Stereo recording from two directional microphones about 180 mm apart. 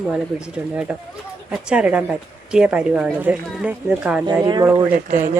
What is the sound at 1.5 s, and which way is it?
A woman's voice, 5° right (ahead or behind).